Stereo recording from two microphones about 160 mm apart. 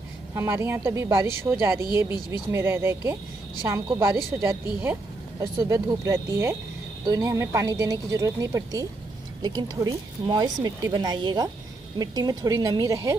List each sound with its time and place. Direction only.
0.3 s a woman's voice: 15° right (ahead or behind)